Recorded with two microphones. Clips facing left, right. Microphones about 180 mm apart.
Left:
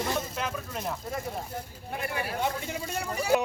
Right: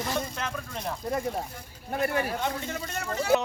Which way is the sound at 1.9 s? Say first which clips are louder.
Right 6 dB; 45° right (ahead or behind).